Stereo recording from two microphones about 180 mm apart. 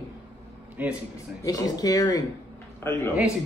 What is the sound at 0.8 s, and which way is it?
Speech, 10° right (ahead or behind).